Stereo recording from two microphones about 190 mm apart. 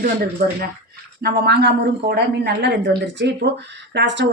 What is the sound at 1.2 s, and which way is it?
Speech, 55° right (ahead or behind).